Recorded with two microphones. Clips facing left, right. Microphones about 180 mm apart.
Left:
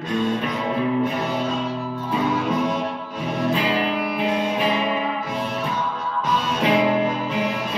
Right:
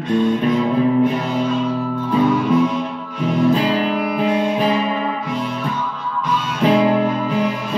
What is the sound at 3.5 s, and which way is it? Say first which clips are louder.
Music: right 5 dB; 40° right (ahead or behind).